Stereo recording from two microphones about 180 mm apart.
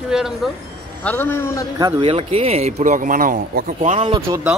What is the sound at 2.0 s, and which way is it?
Speech, 30° right (ahead or behind).